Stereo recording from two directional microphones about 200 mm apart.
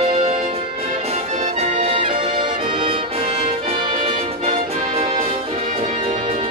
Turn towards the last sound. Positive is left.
turn(degrees=-30)  # may be behind; listen again after turning